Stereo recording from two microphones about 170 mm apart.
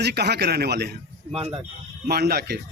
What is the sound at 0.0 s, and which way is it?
Speech, 80° right.